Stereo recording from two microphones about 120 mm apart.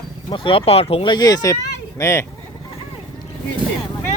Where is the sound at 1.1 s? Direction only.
35° left (ahead or behind).